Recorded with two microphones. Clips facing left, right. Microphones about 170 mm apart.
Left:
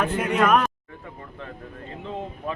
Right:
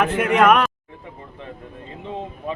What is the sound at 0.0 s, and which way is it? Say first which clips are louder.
Speech: right 5 dB; 80° right.